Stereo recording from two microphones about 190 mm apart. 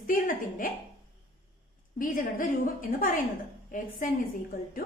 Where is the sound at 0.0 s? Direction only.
45° left (ahead or behind).